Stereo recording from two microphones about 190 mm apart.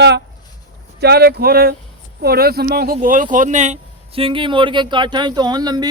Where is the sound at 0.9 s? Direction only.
60° right (ahead or behind).